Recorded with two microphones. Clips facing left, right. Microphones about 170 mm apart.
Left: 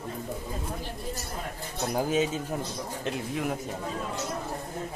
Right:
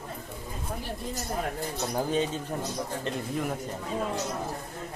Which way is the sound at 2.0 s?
5° left (ahead or behind).